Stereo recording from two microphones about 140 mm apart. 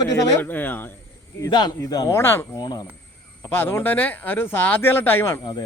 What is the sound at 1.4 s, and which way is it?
A man's voice, 30° left (ahead or behind).